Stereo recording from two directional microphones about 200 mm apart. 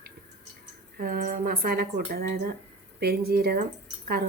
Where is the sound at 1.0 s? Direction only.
45° right (ahead or behind).